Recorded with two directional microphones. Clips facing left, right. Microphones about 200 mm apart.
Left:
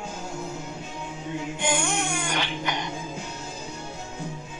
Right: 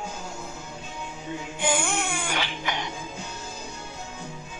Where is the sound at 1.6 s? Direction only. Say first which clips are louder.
Right 1 dB; 5° right (ahead or behind).